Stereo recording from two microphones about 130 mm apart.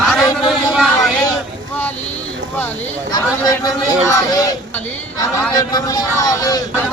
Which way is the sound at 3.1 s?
30° left (ahead or behind).